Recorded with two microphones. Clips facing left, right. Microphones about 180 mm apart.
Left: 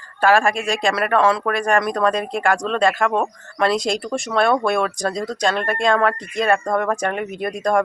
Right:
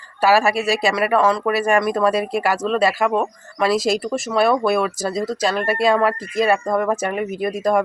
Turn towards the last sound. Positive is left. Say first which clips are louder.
# right 1 dB
turn(degrees=-5)  # may be behind; listen again after turning